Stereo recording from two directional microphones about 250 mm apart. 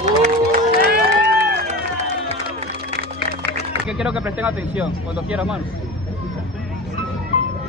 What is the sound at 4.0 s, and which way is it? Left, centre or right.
Speech, centre.